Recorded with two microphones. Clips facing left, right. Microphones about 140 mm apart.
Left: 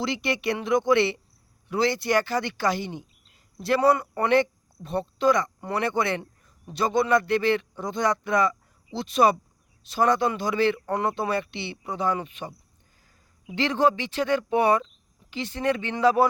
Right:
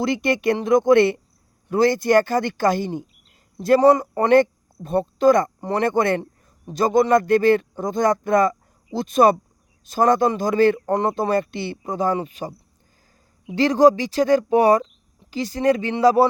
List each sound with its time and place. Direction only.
0.0 s a man's voice: 50° right (ahead or behind)
5.5 s a man's voice: 35° right (ahead or behind)